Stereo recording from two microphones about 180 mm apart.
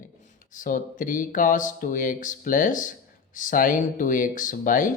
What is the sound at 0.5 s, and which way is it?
Speech, 50° left (ahead or behind).